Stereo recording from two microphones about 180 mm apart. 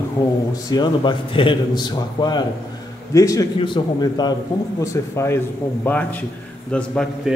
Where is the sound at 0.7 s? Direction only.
25° left (ahead or behind).